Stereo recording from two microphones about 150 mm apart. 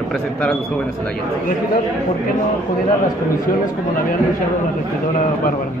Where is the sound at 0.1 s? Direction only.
5° left (ahead or behind).